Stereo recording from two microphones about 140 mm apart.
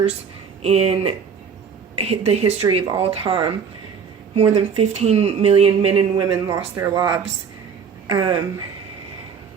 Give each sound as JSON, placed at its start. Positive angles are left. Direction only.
{"t": 0.6, "sound": "speech", "side_deg": -45}